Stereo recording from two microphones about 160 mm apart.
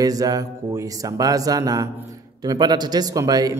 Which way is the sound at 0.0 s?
20° right (ahead or behind).